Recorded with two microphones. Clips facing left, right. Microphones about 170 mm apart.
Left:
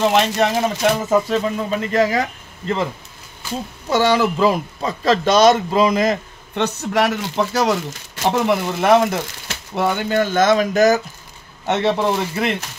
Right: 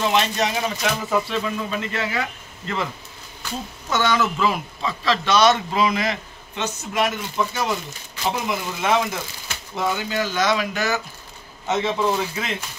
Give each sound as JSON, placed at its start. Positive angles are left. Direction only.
{"t": 0.0, "sound": "speech", "side_deg": 60}
{"t": 3.9, "sound": "speech", "side_deg": 35}
{"t": 6.6, "sound": "speech", "side_deg": 65}
{"t": 8.2, "sound": "speech", "side_deg": 60}
{"t": 11.6, "sound": "speech", "side_deg": 70}